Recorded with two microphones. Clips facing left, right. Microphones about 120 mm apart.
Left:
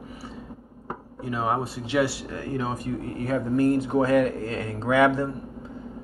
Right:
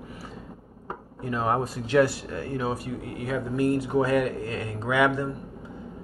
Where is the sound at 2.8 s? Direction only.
40° left (ahead or behind).